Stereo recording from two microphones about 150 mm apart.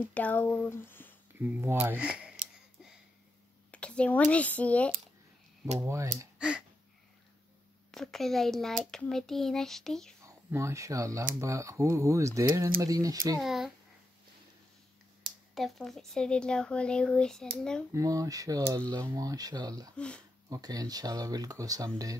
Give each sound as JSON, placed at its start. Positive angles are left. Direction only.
{"t": 0.0, "sound": "speech", "side_deg": 10}
{"t": 1.4, "sound": "a sound", "side_deg": -15}
{"t": 3.7, "sound": "a sound", "side_deg": 10}
{"t": 4.3, "sound": "speech", "side_deg": 10}
{"t": 5.8, "sound": "speech", "side_deg": -20}
{"t": 6.3, "sound": "a sound", "side_deg": -5}
{"t": 7.9, "sound": "speech", "side_deg": 0}
{"t": 10.2, "sound": "speech", "side_deg": -20}
{"t": 13.4, "sound": "speech", "side_deg": 0}
{"t": 15.5, "sound": "speech", "side_deg": 0}
{"t": 17.9, "sound": "speech", "side_deg": -20}